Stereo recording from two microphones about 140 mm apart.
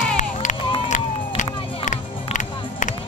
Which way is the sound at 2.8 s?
65° left (ahead or behind).